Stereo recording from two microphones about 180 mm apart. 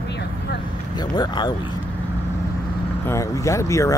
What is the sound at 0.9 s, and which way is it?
Speech, 25° left (ahead or behind).